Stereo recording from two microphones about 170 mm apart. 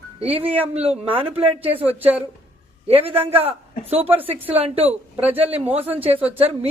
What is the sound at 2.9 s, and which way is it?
Speech, 35° right (ahead or behind).